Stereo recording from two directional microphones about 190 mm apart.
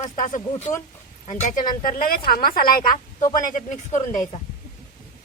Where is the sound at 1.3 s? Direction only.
40° left (ahead or behind).